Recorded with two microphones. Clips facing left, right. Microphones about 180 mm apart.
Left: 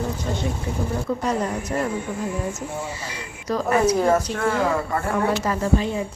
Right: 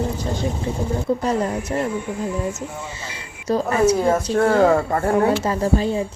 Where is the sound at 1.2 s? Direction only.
30° right (ahead or behind).